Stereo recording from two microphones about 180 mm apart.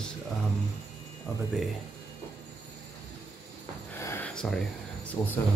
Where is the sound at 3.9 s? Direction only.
15° left (ahead or behind).